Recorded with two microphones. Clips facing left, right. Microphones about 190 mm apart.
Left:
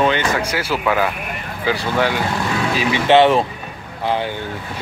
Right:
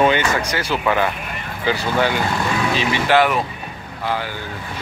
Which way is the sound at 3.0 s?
25° left (ahead or behind).